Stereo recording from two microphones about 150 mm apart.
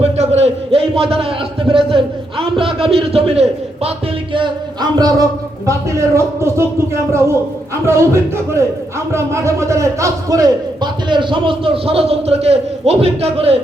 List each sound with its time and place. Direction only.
0.0 s a sound: 45° right (ahead or behind)
1.7 s a man's voice: 35° right (ahead or behind)
4.4 s speech: 25° right (ahead or behind)
7.9 s a man's voice: 20° right (ahead or behind); by 13.6 s 40° right (ahead or behind)